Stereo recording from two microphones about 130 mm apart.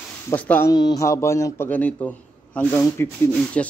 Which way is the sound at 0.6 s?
30° left (ahead or behind).